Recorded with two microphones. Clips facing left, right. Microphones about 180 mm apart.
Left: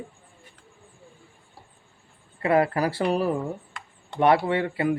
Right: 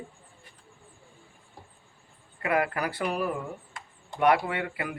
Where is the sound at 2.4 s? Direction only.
30° left (ahead or behind).